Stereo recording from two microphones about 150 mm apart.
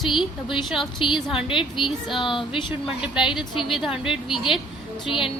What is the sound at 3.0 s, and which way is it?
Speech, 5° right (ahead or behind).